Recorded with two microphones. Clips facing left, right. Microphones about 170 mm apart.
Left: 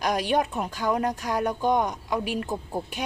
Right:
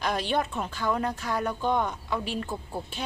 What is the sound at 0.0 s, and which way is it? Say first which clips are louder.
Speech: left 3 dB; 10° left (ahead or behind).